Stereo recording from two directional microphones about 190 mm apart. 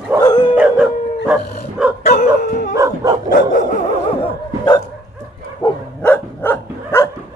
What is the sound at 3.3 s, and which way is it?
Dog, 45° left (ahead or behind).